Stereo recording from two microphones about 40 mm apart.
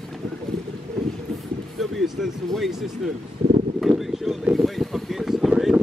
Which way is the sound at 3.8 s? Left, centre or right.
Centre.